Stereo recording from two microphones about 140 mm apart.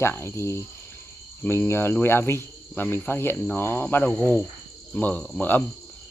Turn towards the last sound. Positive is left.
turn(degrees=10)  # may be behind; listen again after turning